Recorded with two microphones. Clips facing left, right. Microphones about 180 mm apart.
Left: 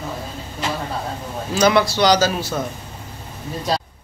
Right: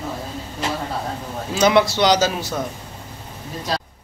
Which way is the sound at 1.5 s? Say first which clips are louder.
Even; 20° right (ahead or behind).